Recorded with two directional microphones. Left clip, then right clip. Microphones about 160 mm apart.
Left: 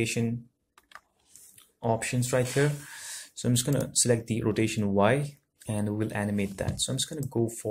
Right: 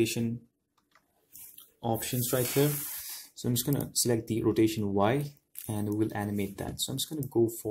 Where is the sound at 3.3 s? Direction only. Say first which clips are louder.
Left 3 dB; 5° right (ahead or behind).